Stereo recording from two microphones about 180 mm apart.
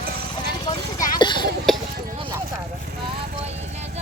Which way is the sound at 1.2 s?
25° left (ahead or behind).